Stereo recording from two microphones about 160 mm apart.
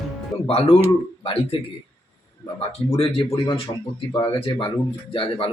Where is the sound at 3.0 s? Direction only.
35° left (ahead or behind).